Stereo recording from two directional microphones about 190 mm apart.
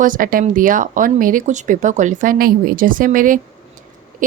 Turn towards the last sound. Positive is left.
turn(degrees=-45)  # may be behind; listen again after turning